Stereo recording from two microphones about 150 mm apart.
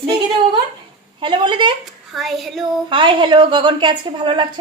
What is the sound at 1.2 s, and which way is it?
Speech, 30° right (ahead or behind).